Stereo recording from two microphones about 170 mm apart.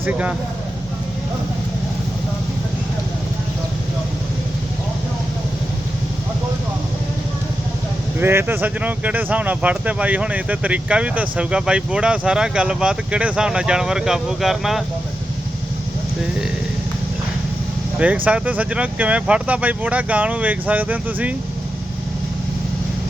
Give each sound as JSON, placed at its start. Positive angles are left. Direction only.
{"t": 0.0, "sound": "speech", "side_deg": -10}
{"t": 8.2, "sound": "speech", "side_deg": -15}
{"t": 18.3, "sound": "speech", "side_deg": -10}